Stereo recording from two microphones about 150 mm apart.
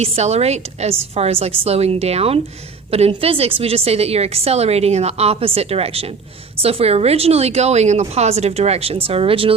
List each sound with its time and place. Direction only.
0.0 s a woman's voice: 45° right (ahead or behind)